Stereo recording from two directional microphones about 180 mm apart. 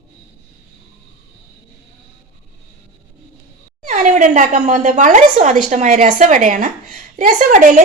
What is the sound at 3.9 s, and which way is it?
A woman's voice, 45° right (ahead or behind).